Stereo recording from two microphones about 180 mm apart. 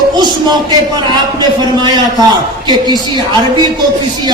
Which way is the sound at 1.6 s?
25° right (ahead or behind).